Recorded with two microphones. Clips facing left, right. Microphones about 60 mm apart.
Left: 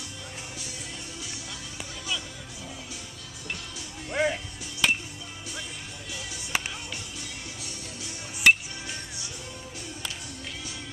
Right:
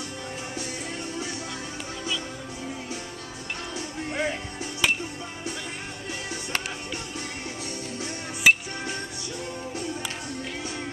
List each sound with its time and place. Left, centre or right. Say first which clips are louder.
4.1 s music: left 3 dB; centre
4.8 s music: even; centre
8.5 s music: right 1 dB; centre